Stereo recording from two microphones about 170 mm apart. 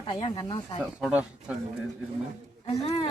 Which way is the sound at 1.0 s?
5° right (ahead or behind).